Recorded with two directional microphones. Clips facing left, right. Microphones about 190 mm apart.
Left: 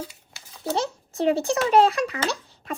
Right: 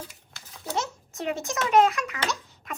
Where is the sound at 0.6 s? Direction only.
35° left (ahead or behind).